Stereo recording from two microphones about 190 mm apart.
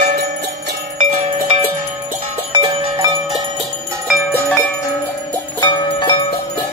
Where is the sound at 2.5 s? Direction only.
25° right (ahead or behind).